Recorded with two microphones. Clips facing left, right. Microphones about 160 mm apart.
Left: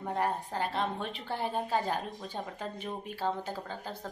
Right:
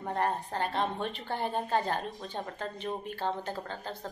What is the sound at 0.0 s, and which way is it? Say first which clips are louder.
A woman's voice: right 1 dB; centre (ahead or behind).